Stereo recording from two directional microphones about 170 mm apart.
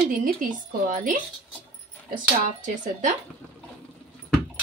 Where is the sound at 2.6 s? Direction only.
45° right (ahead or behind).